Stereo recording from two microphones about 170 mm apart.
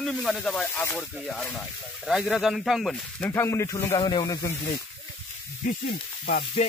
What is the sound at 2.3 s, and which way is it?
Speech, centre (ahead or behind).